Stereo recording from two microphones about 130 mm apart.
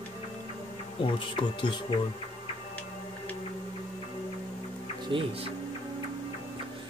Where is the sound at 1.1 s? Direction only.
40° left (ahead or behind).